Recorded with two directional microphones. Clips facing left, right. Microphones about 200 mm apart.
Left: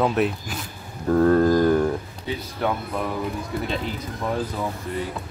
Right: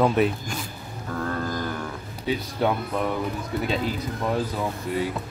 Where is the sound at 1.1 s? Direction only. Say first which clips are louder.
Left 12 dB; 40° left (ahead or behind).